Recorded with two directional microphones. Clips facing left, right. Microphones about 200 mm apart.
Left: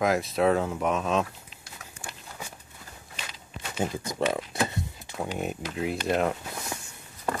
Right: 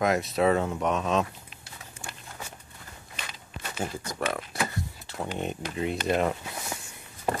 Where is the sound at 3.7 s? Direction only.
20° left (ahead or behind); by 6.3 s centre (ahead or behind).